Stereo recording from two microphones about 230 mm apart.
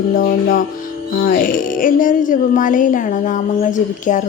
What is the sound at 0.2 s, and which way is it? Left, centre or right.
A woman's voice, left.